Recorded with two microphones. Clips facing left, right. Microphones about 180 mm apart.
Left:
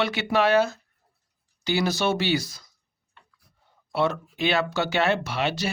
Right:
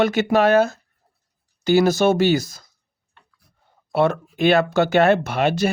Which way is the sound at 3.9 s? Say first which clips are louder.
Right 6 dB; 50° right (ahead or behind).